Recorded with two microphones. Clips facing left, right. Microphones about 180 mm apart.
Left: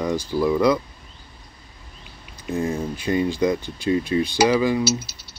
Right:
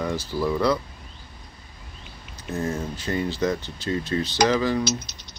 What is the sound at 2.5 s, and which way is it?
Speech, 15° left (ahead or behind).